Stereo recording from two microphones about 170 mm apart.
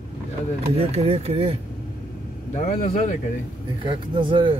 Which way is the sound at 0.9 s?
35° right (ahead or behind).